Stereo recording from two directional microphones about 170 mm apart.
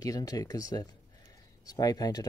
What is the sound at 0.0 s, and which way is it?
Speech, 20° left (ahead or behind).